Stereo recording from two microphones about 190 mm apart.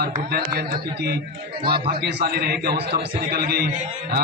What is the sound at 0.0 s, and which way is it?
Speech, 55° right (ahead or behind).